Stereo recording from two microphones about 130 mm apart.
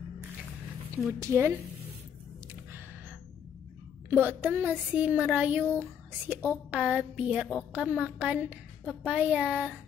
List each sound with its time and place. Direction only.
1.2 s a woman's voice: 20° right (ahead or behind)
4.1 s a woman's voice: 15° right (ahead or behind)